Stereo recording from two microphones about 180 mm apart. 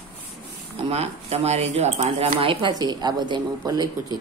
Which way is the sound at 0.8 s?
35° right (ahead or behind).